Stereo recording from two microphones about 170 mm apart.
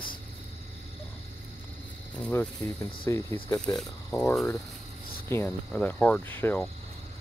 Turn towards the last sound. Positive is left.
turn(degrees=10)  # may be behind; listen again after turning